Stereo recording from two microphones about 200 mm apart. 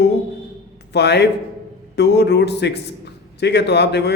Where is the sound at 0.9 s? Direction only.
55° left (ahead or behind).